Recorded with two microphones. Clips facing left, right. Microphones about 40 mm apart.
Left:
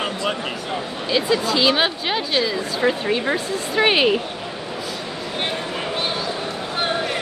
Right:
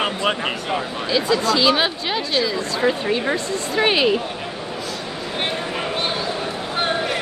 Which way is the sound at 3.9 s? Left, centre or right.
Left.